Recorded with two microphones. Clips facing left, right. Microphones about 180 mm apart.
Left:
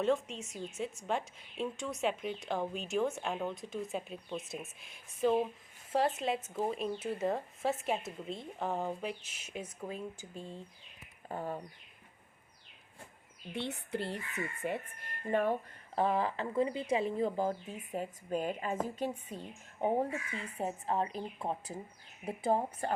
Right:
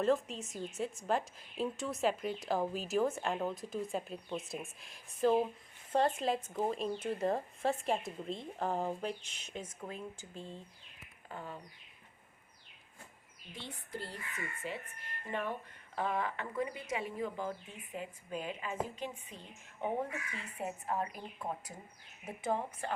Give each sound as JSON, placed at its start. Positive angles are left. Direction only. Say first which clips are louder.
{"t": 0.0, "sound": "a woman's voice", "louder": "even", "side_deg": 0}
{"t": 11.3, "sound": "a woman's voice", "louder": "left 7 dB", "side_deg": 40}
{"t": 13.5, "sound": "speech", "louder": "left 8 dB", "side_deg": 70}
{"t": 14.6, "sound": "speech", "louder": "left 5 dB", "side_deg": 50}
{"t": 16.0, "sound": "a woman's voice", "louder": "left 5 dB", "side_deg": 30}